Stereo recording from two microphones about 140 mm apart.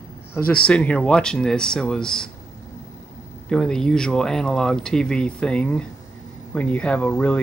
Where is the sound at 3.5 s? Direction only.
5° left (ahead or behind).